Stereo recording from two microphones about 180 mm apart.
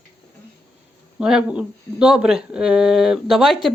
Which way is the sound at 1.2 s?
5° right (ahead or behind).